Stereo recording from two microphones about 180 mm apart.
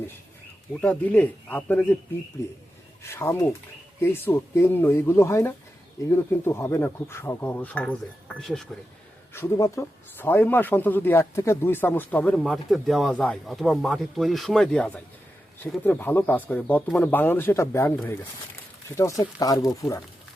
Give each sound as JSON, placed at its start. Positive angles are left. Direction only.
{"t": 0.7, "sound": "speech", "side_deg": 10}
{"t": 3.0, "sound": "speech", "side_deg": 15}
{"t": 9.3, "sound": "speech", "side_deg": 15}